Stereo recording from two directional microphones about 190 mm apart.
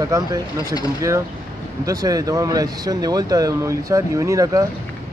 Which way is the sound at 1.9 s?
20° right (ahead or behind).